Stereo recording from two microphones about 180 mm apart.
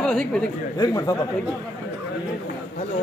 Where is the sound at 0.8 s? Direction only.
20° left (ahead or behind).